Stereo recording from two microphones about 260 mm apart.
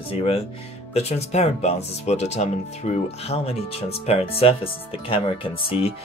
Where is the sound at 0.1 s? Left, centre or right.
Left.